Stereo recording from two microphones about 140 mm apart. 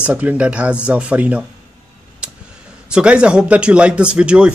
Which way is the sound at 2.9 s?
5° right (ahead or behind).